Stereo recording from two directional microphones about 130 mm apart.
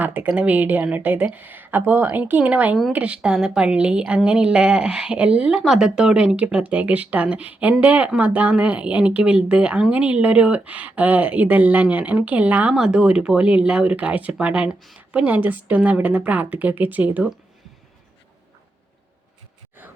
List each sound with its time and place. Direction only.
0.0 s a woman's voice: 10° right (ahead or behind)